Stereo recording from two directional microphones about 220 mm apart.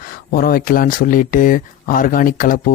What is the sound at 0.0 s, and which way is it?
A man's voice, 40° left (ahead or behind).